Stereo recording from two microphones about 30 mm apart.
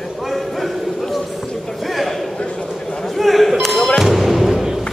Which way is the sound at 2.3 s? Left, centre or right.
Left.